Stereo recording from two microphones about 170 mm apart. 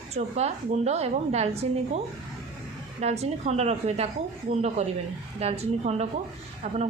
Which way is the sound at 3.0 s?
40° right (ahead or behind).